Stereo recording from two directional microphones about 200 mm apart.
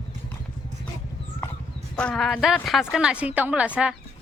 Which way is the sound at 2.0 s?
5° left (ahead or behind).